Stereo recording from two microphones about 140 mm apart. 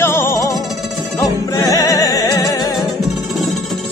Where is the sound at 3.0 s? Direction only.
Centre (ahead or behind).